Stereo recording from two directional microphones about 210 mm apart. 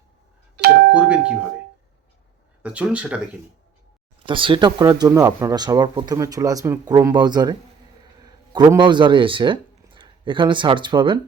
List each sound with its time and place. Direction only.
0.9 s speech: 5° right (ahead or behind)
2.6 s speech: 5° right (ahead or behind)
4.3 s speech: 25° right (ahead or behind)